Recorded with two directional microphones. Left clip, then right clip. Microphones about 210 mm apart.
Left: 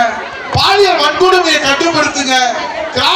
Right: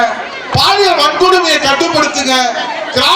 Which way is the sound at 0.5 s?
55° right (ahead or behind).